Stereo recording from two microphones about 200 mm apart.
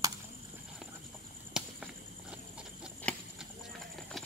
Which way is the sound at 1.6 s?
5° right (ahead or behind).